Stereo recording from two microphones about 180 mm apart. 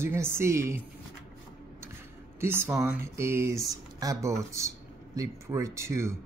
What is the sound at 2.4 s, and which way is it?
Speech, 10° right (ahead or behind).